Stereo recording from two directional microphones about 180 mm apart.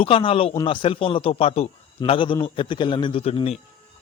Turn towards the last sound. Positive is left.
turn(degrees=35)  # may be behind; listen again after turning